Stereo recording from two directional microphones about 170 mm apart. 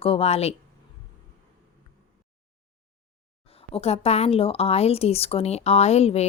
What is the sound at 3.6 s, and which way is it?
A woman's voice, 35° left (ahead or behind).